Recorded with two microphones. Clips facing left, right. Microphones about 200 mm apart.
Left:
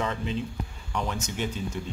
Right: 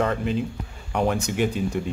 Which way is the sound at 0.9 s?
60° right (ahead or behind).